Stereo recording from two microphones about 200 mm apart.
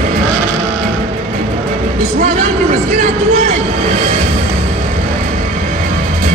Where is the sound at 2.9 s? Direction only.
35° right (ahead or behind).